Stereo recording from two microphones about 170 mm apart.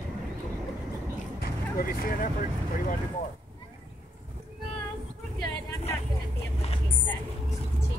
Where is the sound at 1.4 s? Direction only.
60° left (ahead or behind).